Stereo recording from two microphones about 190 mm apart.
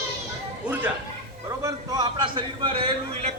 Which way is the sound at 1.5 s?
20° right (ahead or behind).